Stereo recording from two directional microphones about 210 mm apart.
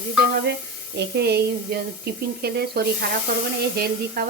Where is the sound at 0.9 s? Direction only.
50° right (ahead or behind).